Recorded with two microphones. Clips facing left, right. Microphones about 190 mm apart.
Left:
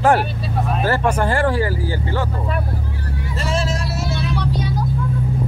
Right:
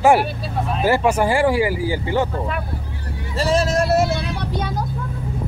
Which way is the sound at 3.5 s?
40° right (ahead or behind).